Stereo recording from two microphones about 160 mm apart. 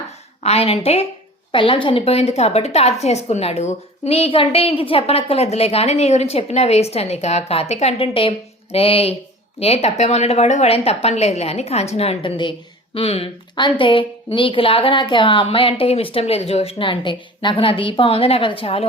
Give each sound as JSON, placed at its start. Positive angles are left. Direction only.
{"t": 0.4, "sound": "a woman's voice", "side_deg": 40}